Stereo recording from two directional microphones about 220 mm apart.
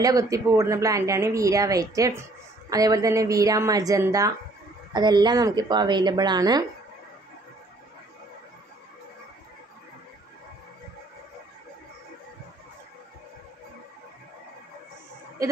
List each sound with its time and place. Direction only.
0.0 s a woman's voice: 15° right (ahead or behind)